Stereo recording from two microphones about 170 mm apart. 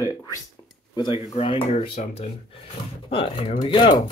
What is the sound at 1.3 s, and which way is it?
Speech, 35° left (ahead or behind).